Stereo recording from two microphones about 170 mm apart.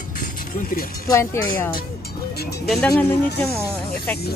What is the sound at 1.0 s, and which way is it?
Speech, 15° left (ahead or behind).